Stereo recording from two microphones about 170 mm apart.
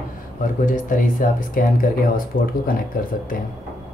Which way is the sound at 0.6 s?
50° left (ahead or behind).